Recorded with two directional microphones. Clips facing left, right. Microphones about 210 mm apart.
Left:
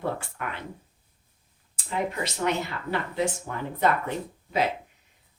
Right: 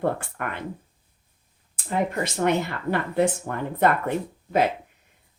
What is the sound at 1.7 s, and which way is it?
Speech, 50° right (ahead or behind).